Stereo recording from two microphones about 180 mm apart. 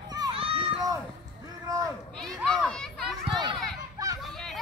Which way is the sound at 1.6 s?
20° right (ahead or behind).